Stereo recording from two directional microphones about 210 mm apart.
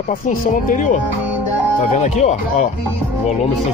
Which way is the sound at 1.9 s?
35° left (ahead or behind).